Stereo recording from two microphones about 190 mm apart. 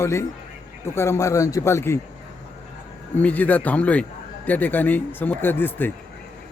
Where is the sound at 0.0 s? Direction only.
15° left (ahead or behind).